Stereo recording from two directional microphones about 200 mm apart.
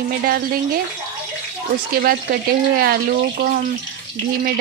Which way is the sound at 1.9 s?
50° right (ahead or behind).